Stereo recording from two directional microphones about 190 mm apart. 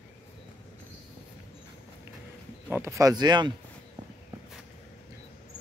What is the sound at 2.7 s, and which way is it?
Speech, 15° right (ahead or behind).